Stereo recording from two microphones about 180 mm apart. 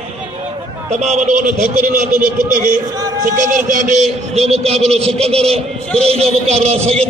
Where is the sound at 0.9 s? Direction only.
40° right (ahead or behind).